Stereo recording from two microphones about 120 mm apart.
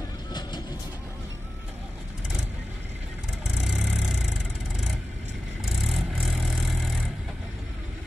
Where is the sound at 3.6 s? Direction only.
5° right (ahead or behind).